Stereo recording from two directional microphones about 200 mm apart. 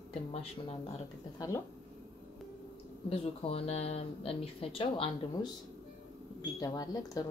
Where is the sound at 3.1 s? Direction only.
30° left (ahead or behind).